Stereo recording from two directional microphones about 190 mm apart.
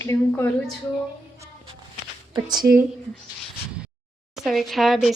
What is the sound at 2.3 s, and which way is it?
Speech, 20° right (ahead or behind).